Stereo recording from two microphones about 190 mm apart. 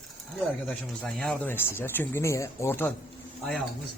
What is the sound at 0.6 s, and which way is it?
Speech, 5° left (ahead or behind).